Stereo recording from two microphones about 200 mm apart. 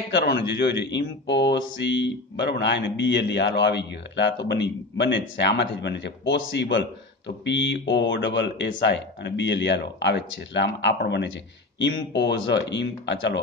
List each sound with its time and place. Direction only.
0.1 s speech: 60° left (ahead or behind)